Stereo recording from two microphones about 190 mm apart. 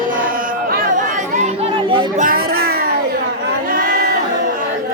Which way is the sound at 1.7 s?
25° right (ahead or behind).